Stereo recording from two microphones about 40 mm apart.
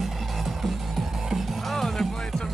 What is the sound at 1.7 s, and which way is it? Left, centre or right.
Music, centre.